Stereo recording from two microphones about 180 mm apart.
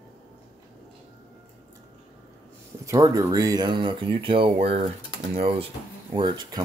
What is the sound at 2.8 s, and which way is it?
Speech, 20° right (ahead or behind).